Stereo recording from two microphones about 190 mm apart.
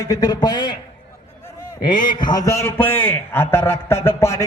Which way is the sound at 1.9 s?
25° left (ahead or behind).